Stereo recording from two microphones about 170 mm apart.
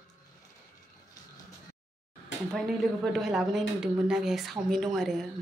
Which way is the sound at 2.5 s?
Centre (ahead or behind).